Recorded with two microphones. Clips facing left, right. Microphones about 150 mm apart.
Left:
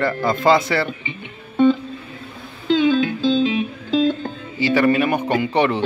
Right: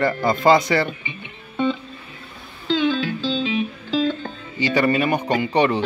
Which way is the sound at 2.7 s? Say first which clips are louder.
Left 4 dB; 45° left (ahead or behind).